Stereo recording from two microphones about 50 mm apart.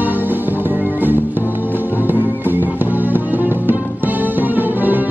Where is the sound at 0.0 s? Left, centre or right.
Right.